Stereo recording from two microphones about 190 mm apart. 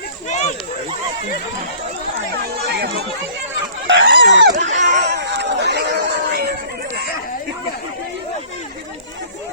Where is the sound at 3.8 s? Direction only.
70° right (ahead or behind).